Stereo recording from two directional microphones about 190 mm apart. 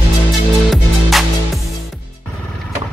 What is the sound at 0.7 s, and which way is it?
Music, centre (ahead or behind).